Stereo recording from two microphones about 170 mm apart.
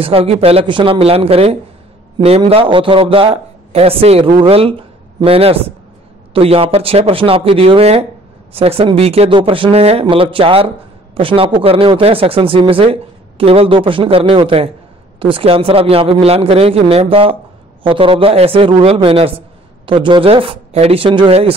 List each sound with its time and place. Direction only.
0.0 s a woman's voice: 35° right (ahead or behind)